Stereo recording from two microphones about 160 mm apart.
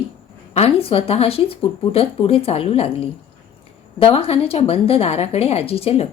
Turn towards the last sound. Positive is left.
turn(degrees=40)  # may be behind; listen again after turning